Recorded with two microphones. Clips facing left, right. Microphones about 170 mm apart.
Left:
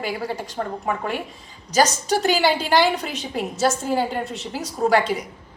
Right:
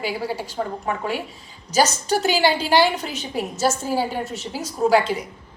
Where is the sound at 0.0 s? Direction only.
5° right (ahead or behind).